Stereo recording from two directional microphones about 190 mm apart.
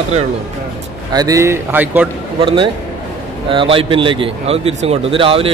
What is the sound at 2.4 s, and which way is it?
Speech, 25° right (ahead or behind).